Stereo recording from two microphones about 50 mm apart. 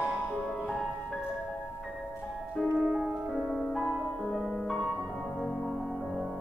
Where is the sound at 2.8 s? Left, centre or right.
Centre.